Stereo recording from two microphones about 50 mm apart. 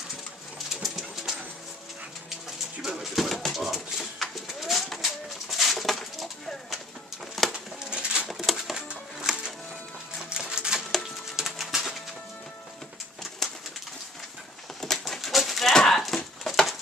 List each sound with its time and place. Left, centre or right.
0.8 s pigeon: centre
2.9 s pigeon: centre
3.6 s a sound: centre
5.0 s bird: centre
7.9 s pigeon: centre
8.5 s music: centre
10.3 s typewriter: centre
11.3 s pigeon: centre
13.4 s bird: centre
14.8 s horse: centre
15.7 s a sound: centre